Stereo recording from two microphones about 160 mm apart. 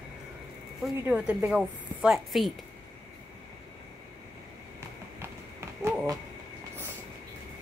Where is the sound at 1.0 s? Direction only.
10° right (ahead or behind).